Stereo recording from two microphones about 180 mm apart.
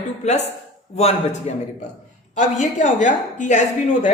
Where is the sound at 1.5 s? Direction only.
40° left (ahead or behind).